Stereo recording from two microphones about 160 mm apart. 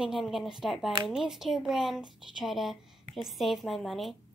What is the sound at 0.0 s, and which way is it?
A woman's voice, centre (ahead or behind).